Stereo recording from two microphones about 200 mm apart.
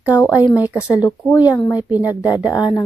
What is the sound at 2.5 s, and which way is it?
Speech, 20° left (ahead or behind).